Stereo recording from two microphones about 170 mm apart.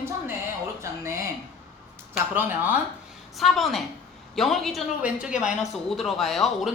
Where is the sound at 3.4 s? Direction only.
Centre (ahead or behind).